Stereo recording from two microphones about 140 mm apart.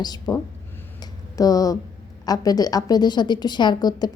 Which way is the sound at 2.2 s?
25° left (ahead or behind).